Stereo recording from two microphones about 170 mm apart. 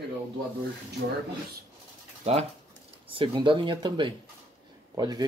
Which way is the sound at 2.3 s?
40° right (ahead or behind).